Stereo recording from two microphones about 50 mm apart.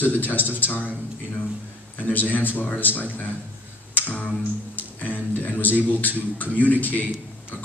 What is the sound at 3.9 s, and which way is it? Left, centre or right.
Tick, left.